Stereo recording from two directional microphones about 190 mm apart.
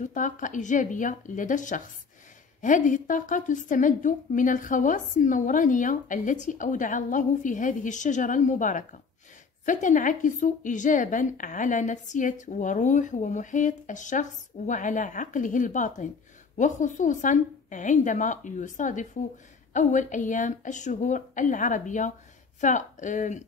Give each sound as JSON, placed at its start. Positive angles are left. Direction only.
{"t": 0.0, "sound": "a woman's voice", "side_deg": 40}